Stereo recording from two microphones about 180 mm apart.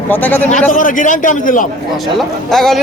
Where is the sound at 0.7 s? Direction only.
50° left (ahead or behind).